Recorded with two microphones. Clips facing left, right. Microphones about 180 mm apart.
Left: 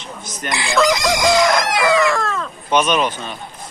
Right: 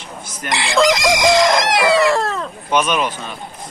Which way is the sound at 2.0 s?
35° right (ahead or behind).